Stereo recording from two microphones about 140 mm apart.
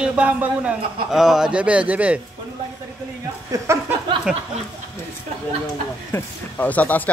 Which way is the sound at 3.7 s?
20° right (ahead or behind).